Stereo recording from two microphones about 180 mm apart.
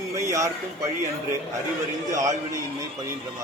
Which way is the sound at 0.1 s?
15° right (ahead or behind).